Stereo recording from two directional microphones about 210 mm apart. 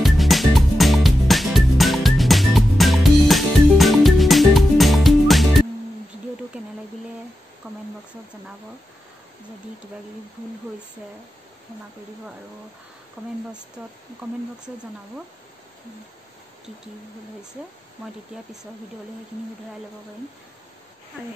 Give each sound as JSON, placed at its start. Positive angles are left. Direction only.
{"t": 0.0, "sound": "music", "side_deg": 0}
{"t": 6.5, "sound": "a sound", "side_deg": -5}
{"t": 13.2, "sound": "speech", "side_deg": -5}